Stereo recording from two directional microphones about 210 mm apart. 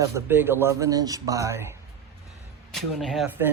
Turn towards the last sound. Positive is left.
turn(degrees=-10)  # may be behind; listen again after turning